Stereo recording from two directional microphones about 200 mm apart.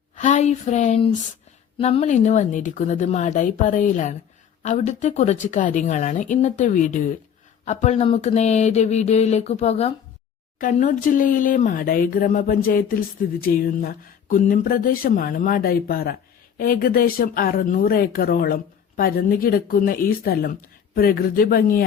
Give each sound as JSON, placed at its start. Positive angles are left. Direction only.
{"t": 0.2, "sound": "a woman's voice", "side_deg": 35}